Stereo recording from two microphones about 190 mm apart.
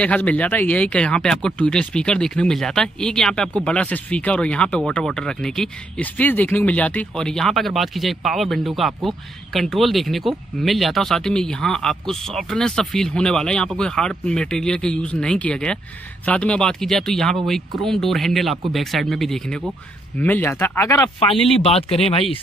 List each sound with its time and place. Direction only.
0.0 s speech: 5° left (ahead or behind)
21.5 s speech: 30° left (ahead or behind)
21.9 s speech: centre (ahead or behind)